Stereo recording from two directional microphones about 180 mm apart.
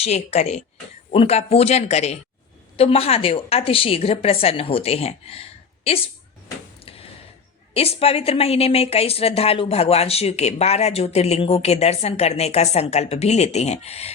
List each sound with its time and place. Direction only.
0.0 s a woman's voice: 35° left (ahead or behind)
6.8 s a sound: 30° left (ahead or behind)
7.8 s a woman's voice: 35° left (ahead or behind)